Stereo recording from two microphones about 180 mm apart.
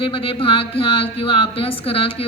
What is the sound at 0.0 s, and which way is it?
A woman's voice, 30° left (ahead or behind).